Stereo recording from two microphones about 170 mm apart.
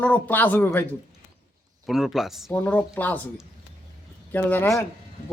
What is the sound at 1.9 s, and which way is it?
Speech, centre (ahead or behind).